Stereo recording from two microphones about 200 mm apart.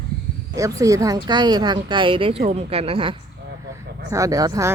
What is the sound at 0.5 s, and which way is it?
Speech, 15° right (ahead or behind).